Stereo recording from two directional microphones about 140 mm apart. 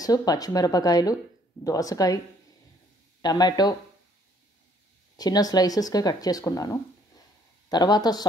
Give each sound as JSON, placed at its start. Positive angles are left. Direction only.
{"t": 0.0, "sound": "speech", "side_deg": 25}
{"t": 3.2, "sound": "speech", "side_deg": 30}
{"t": 5.1, "sound": "speech", "side_deg": 30}